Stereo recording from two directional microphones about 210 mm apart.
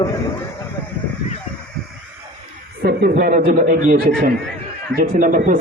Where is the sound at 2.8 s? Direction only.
50° right (ahead or behind).